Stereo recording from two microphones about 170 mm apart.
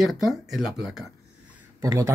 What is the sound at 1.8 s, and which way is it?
Speech, 20° right (ahead or behind).